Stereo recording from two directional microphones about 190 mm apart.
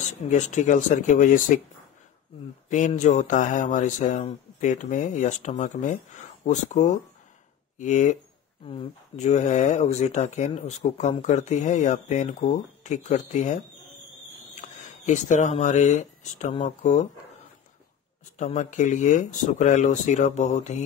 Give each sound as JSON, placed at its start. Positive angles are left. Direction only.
{"t": 0.0, "sound": "speech", "side_deg": 40}
{"t": 2.7, "sound": "speech", "side_deg": 40}
{"t": 8.6, "sound": "speech", "side_deg": 30}
{"t": 18.4, "sound": "speech", "side_deg": 40}